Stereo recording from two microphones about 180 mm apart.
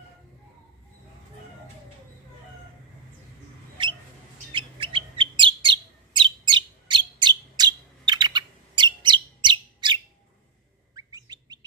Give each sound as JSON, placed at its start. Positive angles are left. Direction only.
{"t": 4.5, "sound": "bird", "side_deg": -30}
{"t": 11.0, "sound": "bird", "side_deg": -20}